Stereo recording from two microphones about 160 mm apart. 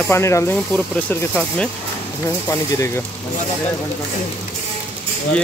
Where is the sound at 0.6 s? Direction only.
5° left (ahead or behind).